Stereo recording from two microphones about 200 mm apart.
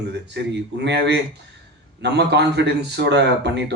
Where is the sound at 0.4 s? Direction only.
60° right (ahead or behind).